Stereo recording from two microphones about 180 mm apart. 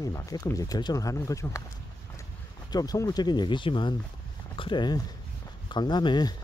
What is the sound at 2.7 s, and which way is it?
Speech, 20° left (ahead or behind).